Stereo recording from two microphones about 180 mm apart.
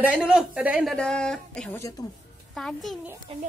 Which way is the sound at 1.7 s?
20° left (ahead or behind).